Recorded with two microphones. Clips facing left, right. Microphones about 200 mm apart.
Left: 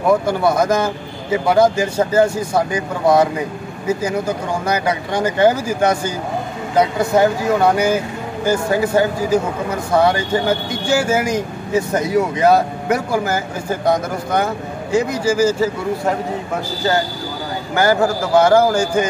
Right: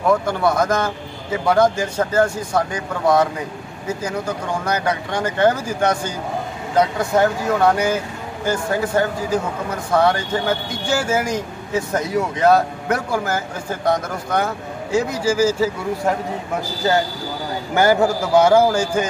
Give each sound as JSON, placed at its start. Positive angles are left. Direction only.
{"t": 0.3, "sound": "speech", "side_deg": 5}
{"t": 4.6, "sound": "speech", "side_deg": 5}
{"t": 17.7, "sound": "a man's voice", "side_deg": -20}